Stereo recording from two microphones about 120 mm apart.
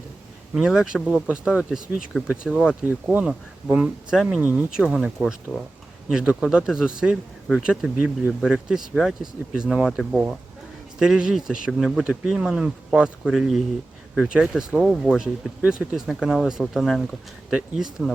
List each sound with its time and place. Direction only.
0.5 s speech: 5° right (ahead or behind)
11.0 s speech: 5° right (ahead or behind)